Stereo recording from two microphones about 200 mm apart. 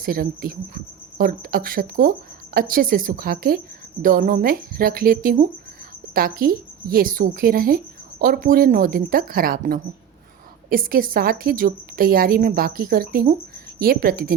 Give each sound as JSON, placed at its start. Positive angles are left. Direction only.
{"t": 0.0, "sound": "a woman's voice", "side_deg": -45}